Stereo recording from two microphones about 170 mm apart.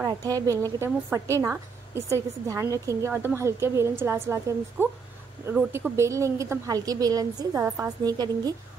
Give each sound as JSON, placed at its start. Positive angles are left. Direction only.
{"t": 0.0, "sound": "a woman's voice", "side_deg": -20}